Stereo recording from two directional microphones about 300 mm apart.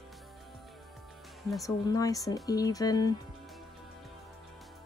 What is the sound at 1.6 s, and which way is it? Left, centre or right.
Speech, centre.